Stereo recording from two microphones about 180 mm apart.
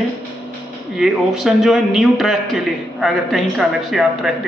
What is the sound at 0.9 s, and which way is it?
A man's voice, centre (ahead or behind).